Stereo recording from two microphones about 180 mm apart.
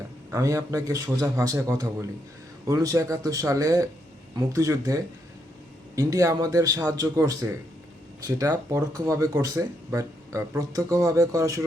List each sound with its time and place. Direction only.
0.3 s a man's voice: 15° right (ahead or behind)